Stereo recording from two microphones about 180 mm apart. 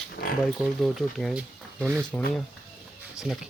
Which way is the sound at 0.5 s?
Centre (ahead or behind).